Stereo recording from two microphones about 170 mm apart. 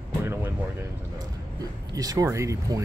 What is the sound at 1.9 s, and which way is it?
Speech, 20° right (ahead or behind).